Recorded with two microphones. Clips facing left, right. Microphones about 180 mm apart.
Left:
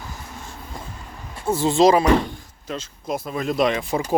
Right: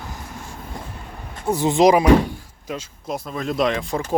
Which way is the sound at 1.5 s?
15° right (ahead or behind).